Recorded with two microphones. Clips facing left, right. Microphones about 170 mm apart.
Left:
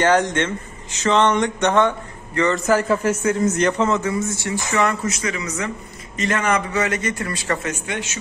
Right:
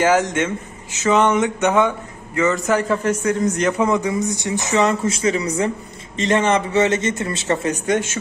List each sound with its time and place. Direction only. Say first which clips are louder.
0.0 s a man's voice: right 1 dB; 5° right (ahead or behind)
3.7 s speech: right 1 dB; 10° right (ahead or behind)
7.7 s speech: right 8 dB; 40° right (ahead or behind)